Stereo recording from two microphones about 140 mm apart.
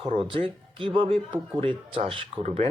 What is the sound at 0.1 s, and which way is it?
Speech, 40° right (ahead or behind).